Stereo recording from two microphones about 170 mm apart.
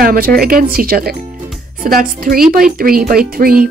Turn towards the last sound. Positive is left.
turn(degrees=-60)  # may be behind; listen again after turning